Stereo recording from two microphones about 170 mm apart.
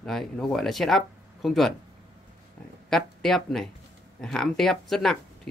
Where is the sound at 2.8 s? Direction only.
Centre (ahead or behind).